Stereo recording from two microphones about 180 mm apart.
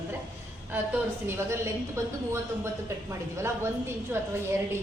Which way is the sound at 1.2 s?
15° right (ahead or behind).